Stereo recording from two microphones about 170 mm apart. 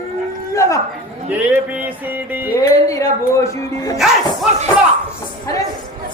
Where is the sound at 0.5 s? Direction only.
20° left (ahead or behind).